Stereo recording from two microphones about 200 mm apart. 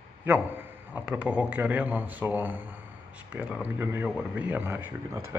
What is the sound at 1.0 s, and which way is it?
Speech, 5° right (ahead or behind).